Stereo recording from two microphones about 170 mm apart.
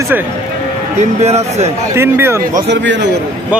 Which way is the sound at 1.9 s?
15° right (ahead or behind).